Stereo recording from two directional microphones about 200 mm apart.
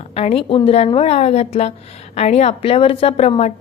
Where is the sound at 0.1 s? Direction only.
30° left (ahead or behind).